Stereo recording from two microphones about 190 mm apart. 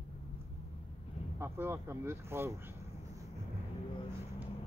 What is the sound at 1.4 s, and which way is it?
Speech, 10° right (ahead or behind).